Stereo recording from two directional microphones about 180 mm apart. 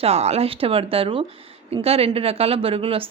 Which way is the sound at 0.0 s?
35° right (ahead or behind).